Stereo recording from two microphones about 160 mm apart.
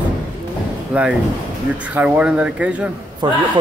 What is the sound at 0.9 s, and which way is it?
Speech, 10° right (ahead or behind).